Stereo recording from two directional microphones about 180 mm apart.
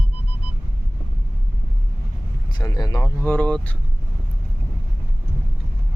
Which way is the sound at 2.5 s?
20° left (ahead or behind).